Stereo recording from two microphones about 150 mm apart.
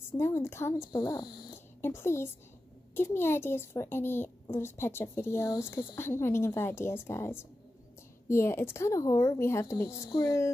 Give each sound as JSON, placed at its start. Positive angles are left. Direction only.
{"t": 0.2, "sound": "a woman's voice", "side_deg": 15}
{"t": 1.8, "sound": "a woman's voice", "side_deg": 15}